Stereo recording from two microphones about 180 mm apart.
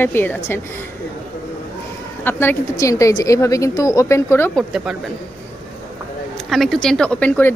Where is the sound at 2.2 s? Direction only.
10° left (ahead or behind).